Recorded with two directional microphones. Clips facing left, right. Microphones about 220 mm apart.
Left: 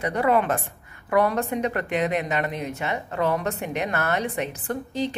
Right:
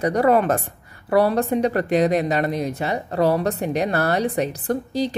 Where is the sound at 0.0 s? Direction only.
40° right (ahead or behind).